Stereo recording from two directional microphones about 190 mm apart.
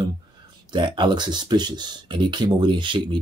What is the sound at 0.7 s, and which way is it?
Speech, 25° right (ahead or behind).